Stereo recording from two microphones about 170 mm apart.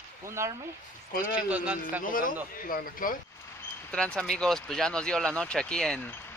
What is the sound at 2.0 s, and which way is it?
Speech, 55° left (ahead or behind).